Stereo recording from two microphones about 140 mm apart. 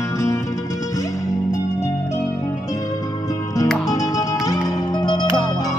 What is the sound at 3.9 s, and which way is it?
Music, 25° left (ahead or behind).